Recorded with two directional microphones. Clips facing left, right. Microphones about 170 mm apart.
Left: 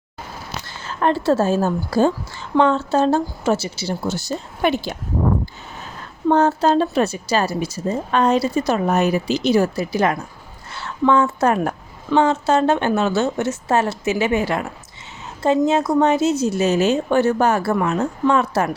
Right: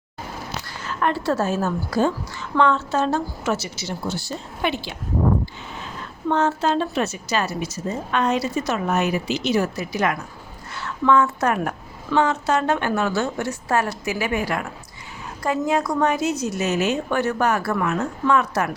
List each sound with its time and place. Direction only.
0.7 s a woman's voice: 30° left (ahead or behind)
4.1 s a woman's voice: 45° left (ahead or behind)